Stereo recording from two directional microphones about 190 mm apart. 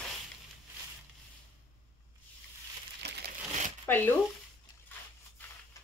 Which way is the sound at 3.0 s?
60° right (ahead or behind).